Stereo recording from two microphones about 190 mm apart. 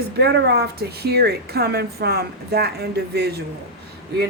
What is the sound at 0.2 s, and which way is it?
Speech, 60° right (ahead or behind).